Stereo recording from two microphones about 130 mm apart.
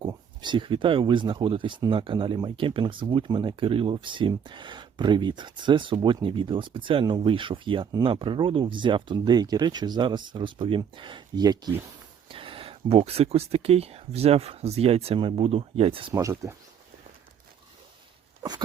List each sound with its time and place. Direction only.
0.0 s speech: 35° right (ahead or behind)
12.3 s speech: 45° right (ahead or behind)
16.1 s speech: 25° right (ahead or behind)